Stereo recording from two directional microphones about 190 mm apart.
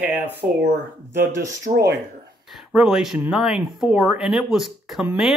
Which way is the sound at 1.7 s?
55° right (ahead or behind).